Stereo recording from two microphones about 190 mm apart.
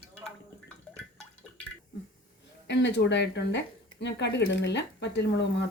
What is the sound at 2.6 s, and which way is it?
Speech, 70° left (ahead or behind).